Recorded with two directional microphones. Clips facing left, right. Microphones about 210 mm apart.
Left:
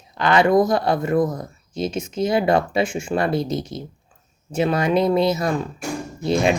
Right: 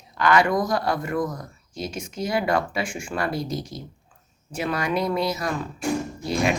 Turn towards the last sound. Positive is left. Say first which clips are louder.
# left 4 dB
turn(degrees=25)  # may be behind; listen again after turning